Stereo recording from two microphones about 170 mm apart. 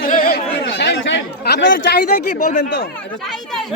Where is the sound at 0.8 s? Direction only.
90° left.